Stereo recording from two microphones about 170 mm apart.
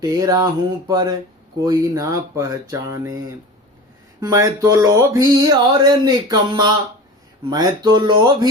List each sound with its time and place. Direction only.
0.0 s speech: 20° right (ahead or behind)